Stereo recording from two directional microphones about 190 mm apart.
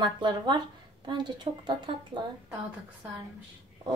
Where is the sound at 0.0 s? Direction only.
25° right (ahead or behind).